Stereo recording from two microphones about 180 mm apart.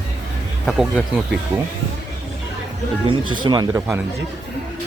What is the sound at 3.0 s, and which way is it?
Speech, 25° right (ahead or behind).